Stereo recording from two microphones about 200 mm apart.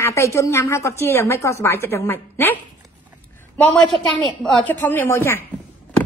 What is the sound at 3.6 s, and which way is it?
A woman's voice, 5° left (ahead or behind).